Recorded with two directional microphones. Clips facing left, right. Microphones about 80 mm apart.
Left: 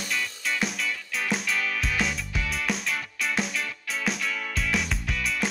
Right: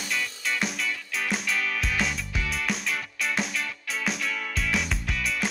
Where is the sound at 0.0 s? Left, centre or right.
Centre.